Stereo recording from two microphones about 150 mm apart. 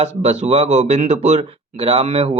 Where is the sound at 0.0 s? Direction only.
45° right (ahead or behind).